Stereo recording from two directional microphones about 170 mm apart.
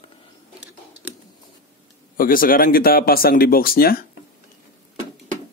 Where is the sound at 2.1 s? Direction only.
55° left (ahead or behind).